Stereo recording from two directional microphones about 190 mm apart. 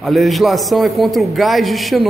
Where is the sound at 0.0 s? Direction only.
Centre (ahead or behind).